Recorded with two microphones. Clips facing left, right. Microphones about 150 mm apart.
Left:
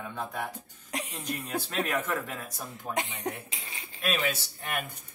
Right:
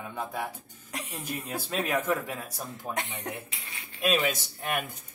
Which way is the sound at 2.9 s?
20° left (ahead or behind).